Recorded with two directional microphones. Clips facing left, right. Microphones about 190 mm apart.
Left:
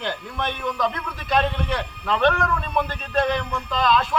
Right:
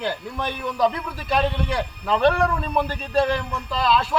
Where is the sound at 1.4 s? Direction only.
10° right (ahead or behind).